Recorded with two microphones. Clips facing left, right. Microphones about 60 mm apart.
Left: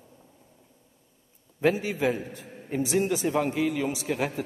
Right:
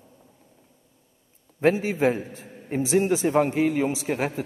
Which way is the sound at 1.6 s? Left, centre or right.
Right.